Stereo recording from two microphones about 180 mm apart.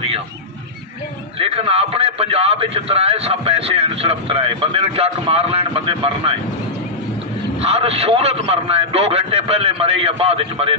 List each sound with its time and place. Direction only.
1.4 s a man's voice: 30° right (ahead or behind)
7.6 s a man's voice: 35° right (ahead or behind)